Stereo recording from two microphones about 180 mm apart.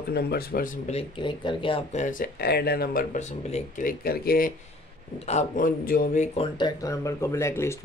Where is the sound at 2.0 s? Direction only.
50° left (ahead or behind).